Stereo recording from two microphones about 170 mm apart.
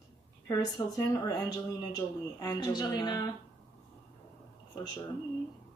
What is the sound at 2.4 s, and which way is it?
Speech, 25° left (ahead or behind).